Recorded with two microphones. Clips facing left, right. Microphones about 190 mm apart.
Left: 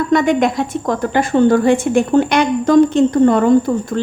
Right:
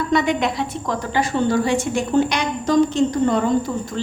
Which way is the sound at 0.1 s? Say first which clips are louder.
Left 6 dB; 50° left (ahead or behind).